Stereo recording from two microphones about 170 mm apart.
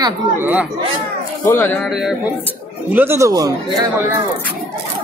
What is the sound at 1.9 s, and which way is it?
Speech, 5° right (ahead or behind).